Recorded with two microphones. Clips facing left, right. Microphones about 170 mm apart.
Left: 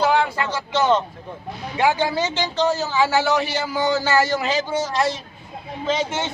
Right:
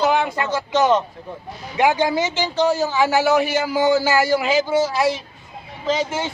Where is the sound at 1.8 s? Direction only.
15° right (ahead or behind).